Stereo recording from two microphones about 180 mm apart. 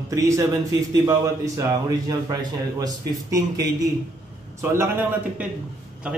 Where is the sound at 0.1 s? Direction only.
15° right (ahead or behind).